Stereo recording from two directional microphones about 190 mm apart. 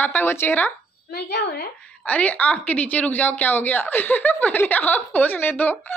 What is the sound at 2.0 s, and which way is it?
A woman's voice, 5° left (ahead or behind).